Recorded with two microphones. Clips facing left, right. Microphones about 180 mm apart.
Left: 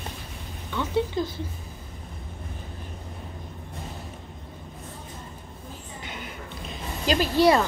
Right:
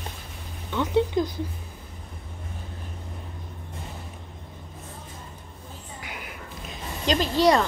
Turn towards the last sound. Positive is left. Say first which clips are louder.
# left 1 dB
turn(degrees=10)  # may be behind; listen again after turning